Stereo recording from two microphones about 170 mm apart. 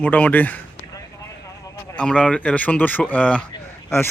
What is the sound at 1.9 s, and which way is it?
Speech, 5° left (ahead or behind).